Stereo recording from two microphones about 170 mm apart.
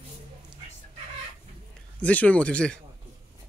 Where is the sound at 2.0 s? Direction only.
10° left (ahead or behind).